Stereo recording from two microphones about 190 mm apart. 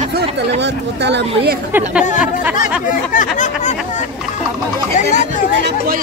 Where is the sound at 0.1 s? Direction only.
65° right (ahead or behind).